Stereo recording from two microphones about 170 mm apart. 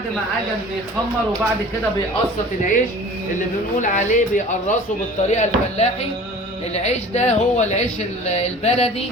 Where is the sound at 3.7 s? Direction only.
45° left (ahead or behind).